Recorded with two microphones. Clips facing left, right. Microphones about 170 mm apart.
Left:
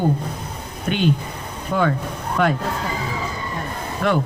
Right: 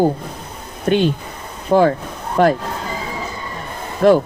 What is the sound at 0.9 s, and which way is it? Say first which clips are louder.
Speech: right 8 dB; 45° right (ahead or behind).